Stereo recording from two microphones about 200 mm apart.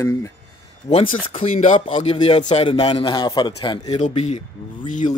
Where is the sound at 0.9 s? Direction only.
35° left (ahead or behind).